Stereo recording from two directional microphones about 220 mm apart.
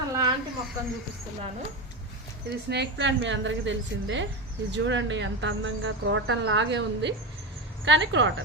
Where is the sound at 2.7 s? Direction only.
50° right (ahead or behind).